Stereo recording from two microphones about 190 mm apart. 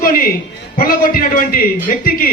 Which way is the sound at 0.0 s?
50° left (ahead or behind).